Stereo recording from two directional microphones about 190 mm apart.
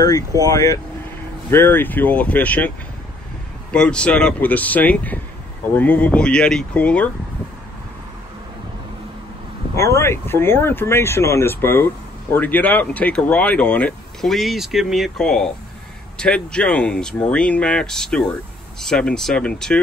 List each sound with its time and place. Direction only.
0.0 s speech: 20° left (ahead or behind)
3.7 s speech: 5° left (ahead or behind)
9.8 s speech: 15° left (ahead or behind)